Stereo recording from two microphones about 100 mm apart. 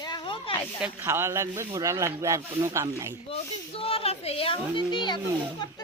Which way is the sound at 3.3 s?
70° left (ahead or behind).